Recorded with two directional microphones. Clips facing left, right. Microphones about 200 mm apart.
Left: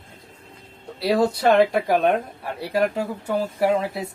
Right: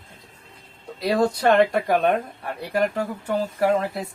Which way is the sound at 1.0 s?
5° left (ahead or behind).